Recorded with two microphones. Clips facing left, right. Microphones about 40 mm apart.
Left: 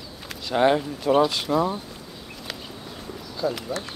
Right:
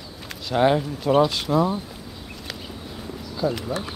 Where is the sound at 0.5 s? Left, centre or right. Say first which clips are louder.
Right 1 dB; centre.